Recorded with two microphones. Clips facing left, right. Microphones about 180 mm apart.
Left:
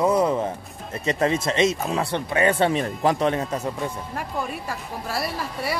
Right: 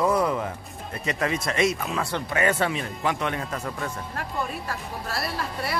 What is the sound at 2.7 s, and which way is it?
Speech, 35° left (ahead or behind).